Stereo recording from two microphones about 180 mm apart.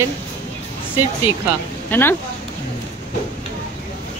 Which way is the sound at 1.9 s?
10° left (ahead or behind).